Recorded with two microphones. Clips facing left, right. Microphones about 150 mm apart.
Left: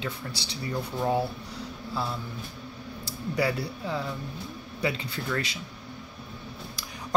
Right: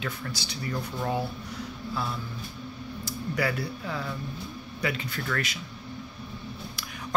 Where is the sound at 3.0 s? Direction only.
30° left (ahead or behind).